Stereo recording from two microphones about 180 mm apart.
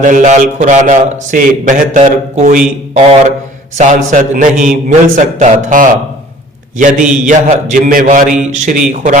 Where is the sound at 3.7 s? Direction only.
45° right (ahead or behind).